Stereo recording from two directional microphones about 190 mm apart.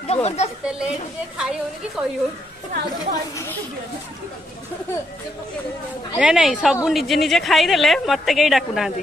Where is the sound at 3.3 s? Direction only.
15° left (ahead or behind).